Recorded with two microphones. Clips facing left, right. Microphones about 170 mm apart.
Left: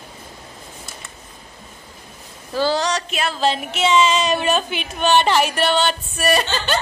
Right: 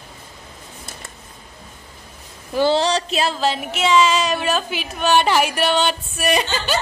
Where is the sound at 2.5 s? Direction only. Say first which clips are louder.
Right 3 dB; 20° right (ahead or behind).